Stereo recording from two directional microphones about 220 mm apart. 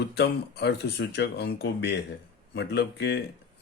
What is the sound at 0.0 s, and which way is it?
Speech, 50° left (ahead or behind).